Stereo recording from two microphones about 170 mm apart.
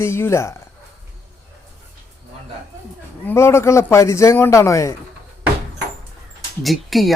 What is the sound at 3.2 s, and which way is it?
A man's voice, 15° left (ahead or behind).